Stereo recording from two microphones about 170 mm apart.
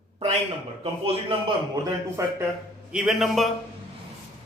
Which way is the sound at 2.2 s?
15° right (ahead or behind).